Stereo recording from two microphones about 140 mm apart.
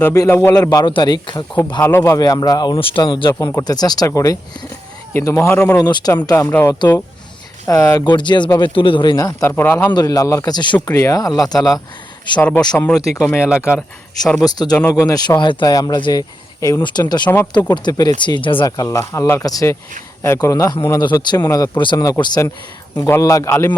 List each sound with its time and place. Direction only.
0.0 s a man's voice: 20° left (ahead or behind)
1.8 s a man's voice: 15° left (ahead or behind)
5.9 s speech: 30° left (ahead or behind)
6.5 s a man's voice: 15° left (ahead or behind)
8.0 s speech: 35° left (ahead or behind); by 9.9 s 15° left (ahead or behind)
9.9 s speech: 25° left (ahead or behind)
12.4 s a man's voice: 10° left (ahead or behind)
15.0 s speech: 25° left (ahead or behind)
17.2 s a man's voice: 15° left (ahead or behind)
17.7 s speech: 30° left (ahead or behind)